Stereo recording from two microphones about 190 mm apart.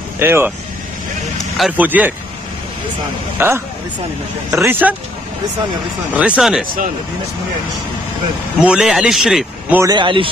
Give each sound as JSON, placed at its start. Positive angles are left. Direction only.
{"t": 0.2, "sound": "speech", "side_deg": -10}
{"t": 1.6, "sound": "speech", "side_deg": -10}
{"t": 3.3, "sound": "speech", "side_deg": -10}
{"t": 6.1, "sound": "speech", "side_deg": -5}
{"t": 8.6, "sound": "speech", "side_deg": -5}
{"t": 9.8, "sound": "speech", "side_deg": -20}